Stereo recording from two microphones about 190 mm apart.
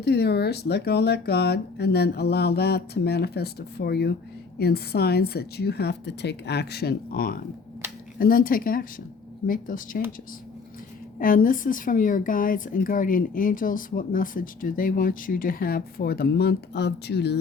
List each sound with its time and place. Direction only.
0.0 s a woman's voice: 60° left (ahead or behind)
11.2 s a woman's voice: 50° left (ahead or behind)